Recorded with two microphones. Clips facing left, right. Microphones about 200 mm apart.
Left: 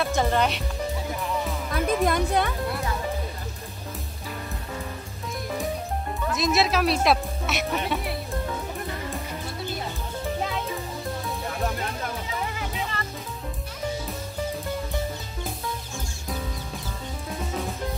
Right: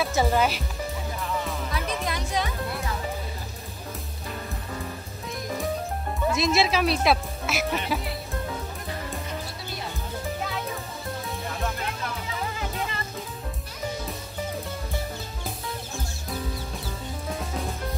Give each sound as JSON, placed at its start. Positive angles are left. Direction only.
{"t": 0.0, "sound": "speech", "side_deg": -5}
{"t": 1.7, "sound": "music", "side_deg": 50}
{"t": 6.2, "sound": "speech", "side_deg": 0}